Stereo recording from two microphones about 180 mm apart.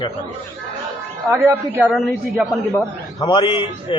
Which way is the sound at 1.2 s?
10° right (ahead or behind).